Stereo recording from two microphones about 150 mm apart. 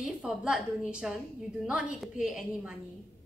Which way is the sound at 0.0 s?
5° right (ahead or behind).